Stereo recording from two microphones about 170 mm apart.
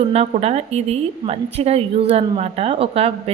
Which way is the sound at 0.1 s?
40° right (ahead or behind).